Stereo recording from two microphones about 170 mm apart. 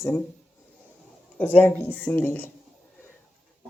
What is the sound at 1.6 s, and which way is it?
Speech, 10° left (ahead or behind).